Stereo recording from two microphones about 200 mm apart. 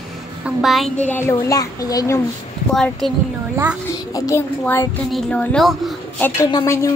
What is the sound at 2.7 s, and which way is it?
Speech, centre (ahead or behind).